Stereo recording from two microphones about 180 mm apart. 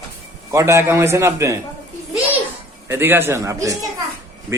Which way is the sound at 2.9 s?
15° right (ahead or behind).